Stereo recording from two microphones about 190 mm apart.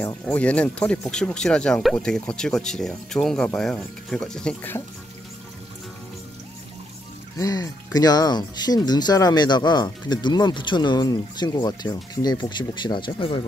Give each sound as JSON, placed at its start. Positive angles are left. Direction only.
{"t": 0.0, "sound": "speech", "side_deg": 10}
{"t": 7.3, "sound": "speech", "side_deg": 20}